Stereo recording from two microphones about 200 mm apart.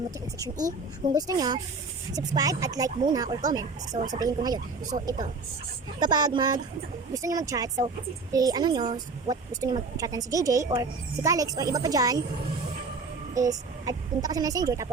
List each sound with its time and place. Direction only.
1.1 s a woman's voice: 20° right (ahead or behind)
6.0 s a woman's voice: 20° right (ahead or behind)
13.3 s a woman's voice: 15° right (ahead or behind)